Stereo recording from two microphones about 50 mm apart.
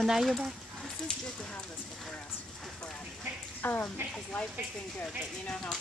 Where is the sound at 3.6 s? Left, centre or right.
Left.